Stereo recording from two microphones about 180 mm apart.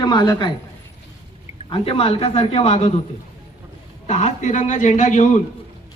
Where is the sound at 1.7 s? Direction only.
30° left (ahead or behind).